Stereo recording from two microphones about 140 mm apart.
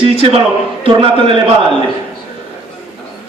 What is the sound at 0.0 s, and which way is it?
A man's voice, 45° right (ahead or behind).